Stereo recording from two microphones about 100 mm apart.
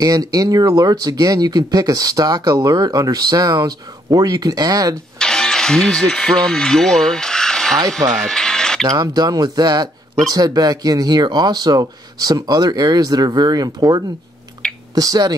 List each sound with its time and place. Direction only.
0.0 s speech: 40° right (ahead or behind)
5.2 s speech: 5° left (ahead or behind)
8.1 s music: centre (ahead or behind)
8.8 s speech: 40° right (ahead or behind)
14.6 s a sound: 10° left (ahead or behind)
15.0 s speech: 40° right (ahead or behind)